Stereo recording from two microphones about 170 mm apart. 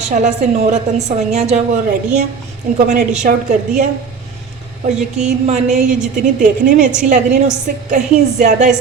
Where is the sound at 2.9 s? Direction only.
45° right (ahead or behind).